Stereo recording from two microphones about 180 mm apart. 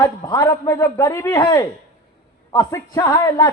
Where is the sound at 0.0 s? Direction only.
20° left (ahead or behind).